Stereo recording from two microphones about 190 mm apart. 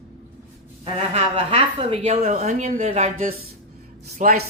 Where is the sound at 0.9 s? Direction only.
30° right (ahead or behind).